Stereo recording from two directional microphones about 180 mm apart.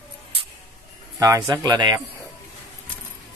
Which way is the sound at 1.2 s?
20° right (ahead or behind).